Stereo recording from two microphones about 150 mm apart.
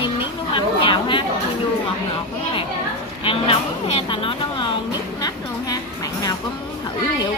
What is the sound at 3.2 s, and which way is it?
A woman's voice, 35° left (ahead or behind).